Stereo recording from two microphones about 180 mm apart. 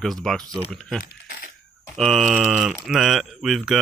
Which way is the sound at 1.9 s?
Centre (ahead or behind).